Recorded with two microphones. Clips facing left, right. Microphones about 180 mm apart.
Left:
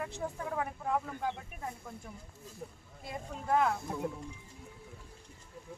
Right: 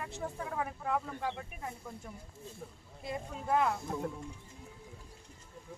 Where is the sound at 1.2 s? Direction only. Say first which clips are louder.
Left 1 dB; centre (ahead or behind).